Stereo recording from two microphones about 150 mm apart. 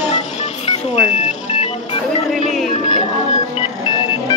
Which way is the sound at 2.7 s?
55° left (ahead or behind).